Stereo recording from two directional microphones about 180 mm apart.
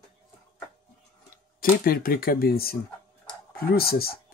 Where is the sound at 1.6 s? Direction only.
55° left (ahead or behind).